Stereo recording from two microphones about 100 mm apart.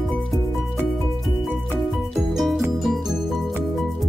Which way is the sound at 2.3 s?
Centre (ahead or behind).